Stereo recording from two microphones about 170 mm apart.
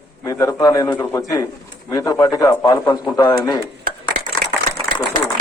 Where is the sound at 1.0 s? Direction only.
10° left (ahead or behind).